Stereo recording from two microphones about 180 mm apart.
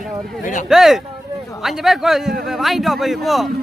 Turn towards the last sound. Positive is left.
turn(degrees=0)  # may be behind; listen again after turning